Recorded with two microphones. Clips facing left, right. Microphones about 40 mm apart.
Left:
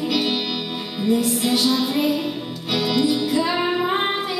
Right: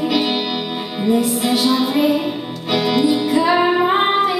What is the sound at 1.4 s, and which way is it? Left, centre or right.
Music, centre.